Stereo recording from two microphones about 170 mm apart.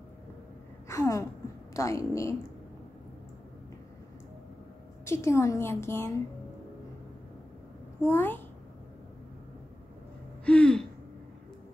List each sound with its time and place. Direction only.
0.8 s a sound: 20° left (ahead or behind)
1.7 s a woman's voice: 20° left (ahead or behind)
5.0 s a woman's voice: 15° left (ahead or behind)
8.0 s a woman's voice: 15° left (ahead or behind)
10.4 s gasp: 5° left (ahead or behind)